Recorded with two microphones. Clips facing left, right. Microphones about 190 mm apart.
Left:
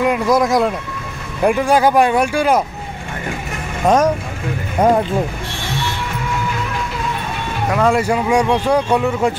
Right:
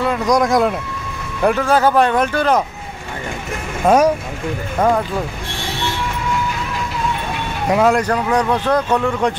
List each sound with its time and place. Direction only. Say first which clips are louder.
0.0 s speech: left 1 dB; 10° left (ahead or behind)
1.4 s speech: left 1 dB; 10° left (ahead or behind)
3.8 s speech: right 1 dB; 10° right (ahead or behind)
4.7 s speech: left 2 dB; 20° left (ahead or behind)
7.9 s speech: left 1 dB; 10° left (ahead or behind)